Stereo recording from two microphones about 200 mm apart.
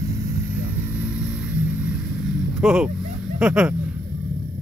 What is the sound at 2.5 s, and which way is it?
Speech, 5° right (ahead or behind).